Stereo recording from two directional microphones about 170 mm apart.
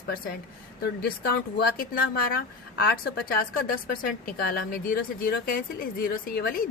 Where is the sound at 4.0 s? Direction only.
55° left (ahead or behind).